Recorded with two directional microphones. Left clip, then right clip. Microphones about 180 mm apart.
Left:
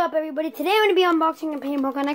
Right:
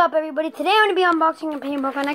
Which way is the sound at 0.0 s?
10° left (ahead or behind).